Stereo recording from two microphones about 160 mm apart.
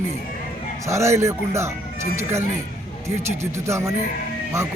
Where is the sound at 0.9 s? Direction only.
15° right (ahead or behind).